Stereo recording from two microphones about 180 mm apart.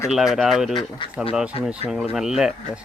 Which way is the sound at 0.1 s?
Centre (ahead or behind).